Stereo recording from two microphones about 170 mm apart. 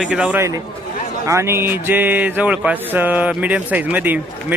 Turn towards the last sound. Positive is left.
turn(degrees=-10)  # may be behind; listen again after turning